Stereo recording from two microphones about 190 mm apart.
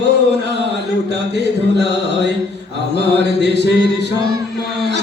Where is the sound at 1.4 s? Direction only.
65° right (ahead or behind).